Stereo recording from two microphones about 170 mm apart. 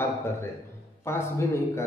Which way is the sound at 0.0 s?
15° left (ahead or behind).